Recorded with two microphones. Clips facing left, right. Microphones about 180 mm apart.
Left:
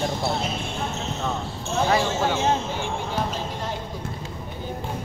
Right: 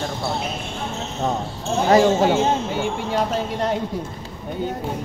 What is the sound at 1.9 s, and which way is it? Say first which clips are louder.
Speech: right 9 dB; 40° right (ahead or behind).